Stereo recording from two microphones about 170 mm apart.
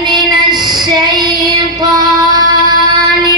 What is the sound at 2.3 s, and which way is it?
Music, 25° right (ahead or behind).